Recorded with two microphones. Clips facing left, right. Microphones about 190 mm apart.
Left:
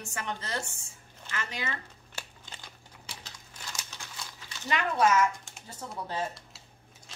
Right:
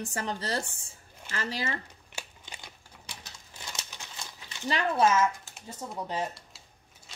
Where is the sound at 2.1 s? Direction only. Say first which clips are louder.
Right 2 dB; 15° right (ahead or behind).